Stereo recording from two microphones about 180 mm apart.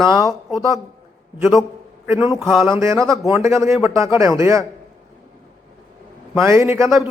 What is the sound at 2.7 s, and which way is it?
Speech, 15° right (ahead or behind).